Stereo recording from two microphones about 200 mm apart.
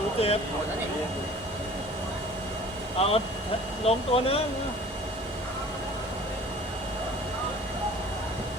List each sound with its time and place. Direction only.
0.2 s speech: 30° left (ahead or behind)
3.0 s speech: 30° left (ahead or behind)